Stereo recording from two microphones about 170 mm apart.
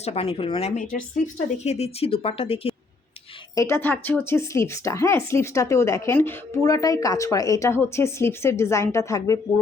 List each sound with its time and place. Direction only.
0.0 s speech: 35° left (ahead or behind)
0.8 s speech: 50° left (ahead or behind)
1.6 s speech: 40° left (ahead or behind)
3.5 s speech: 15° left (ahead or behind)